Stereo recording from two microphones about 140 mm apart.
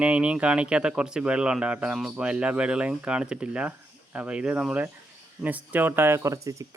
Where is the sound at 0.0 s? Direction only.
10° right (ahead or behind).